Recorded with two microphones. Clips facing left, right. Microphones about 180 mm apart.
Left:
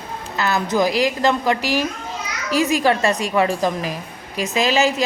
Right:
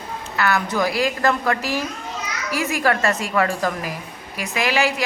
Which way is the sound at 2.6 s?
20° left (ahead or behind).